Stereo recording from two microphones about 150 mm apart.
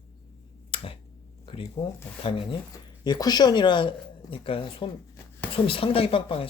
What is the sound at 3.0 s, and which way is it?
Speech, 25° left (ahead or behind).